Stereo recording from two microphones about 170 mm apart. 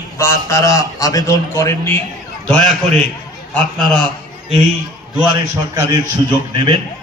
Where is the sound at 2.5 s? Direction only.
5° left (ahead or behind).